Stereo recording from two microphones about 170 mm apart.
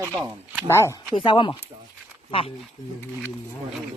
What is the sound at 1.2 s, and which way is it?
Speech, 30° left (ahead or behind).